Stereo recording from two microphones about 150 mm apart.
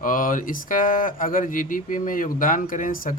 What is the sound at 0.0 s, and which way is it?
Speech, 65° left (ahead or behind).